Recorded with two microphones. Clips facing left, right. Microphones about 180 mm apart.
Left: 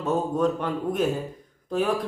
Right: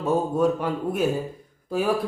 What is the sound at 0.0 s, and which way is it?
A man's voice, 10° right (ahead or behind).